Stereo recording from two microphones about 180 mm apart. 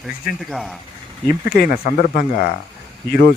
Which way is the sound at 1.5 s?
55° left (ahead or behind).